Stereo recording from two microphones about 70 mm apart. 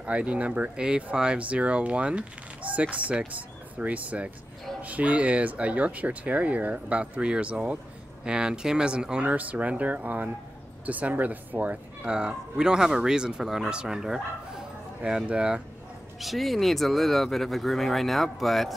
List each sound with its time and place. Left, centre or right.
0.0 s speech: centre
16.2 s speech: centre